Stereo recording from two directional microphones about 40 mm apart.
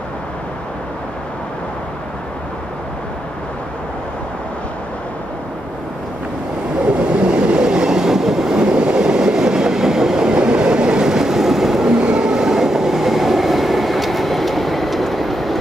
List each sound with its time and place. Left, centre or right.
6.8 s train: right; by 11.9 s centre
12.0 s train: right; by 15.5 s centre